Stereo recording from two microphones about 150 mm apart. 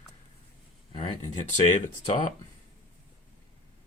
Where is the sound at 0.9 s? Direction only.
30° left (ahead or behind).